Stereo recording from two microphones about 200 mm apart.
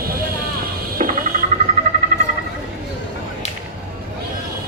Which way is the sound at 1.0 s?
35° right (ahead or behind).